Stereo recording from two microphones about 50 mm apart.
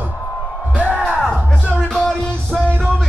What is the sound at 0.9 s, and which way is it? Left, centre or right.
Music, centre.